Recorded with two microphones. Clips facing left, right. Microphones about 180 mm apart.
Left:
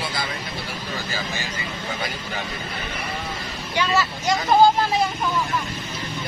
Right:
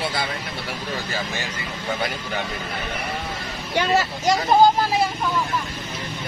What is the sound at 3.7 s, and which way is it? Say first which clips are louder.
Speech: right 2 dB; 45° right (ahead or behind).